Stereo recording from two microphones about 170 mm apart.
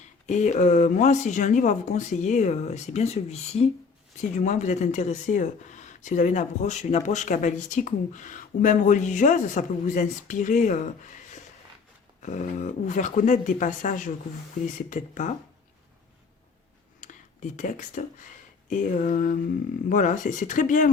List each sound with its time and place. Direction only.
0.3 s speech: 45° left (ahead or behind)
17.0 s speech: 45° left (ahead or behind)